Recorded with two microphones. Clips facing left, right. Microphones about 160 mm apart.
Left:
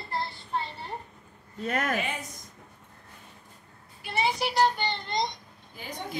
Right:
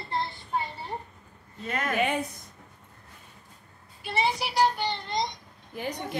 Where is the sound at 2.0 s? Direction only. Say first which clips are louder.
Right 8 dB; 60° right (ahead or behind).